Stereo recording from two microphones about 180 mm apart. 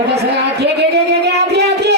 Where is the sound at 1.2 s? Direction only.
65° right (ahead or behind).